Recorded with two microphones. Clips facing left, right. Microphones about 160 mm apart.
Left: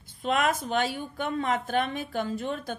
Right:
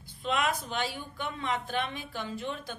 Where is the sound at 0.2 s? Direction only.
45° left (ahead or behind).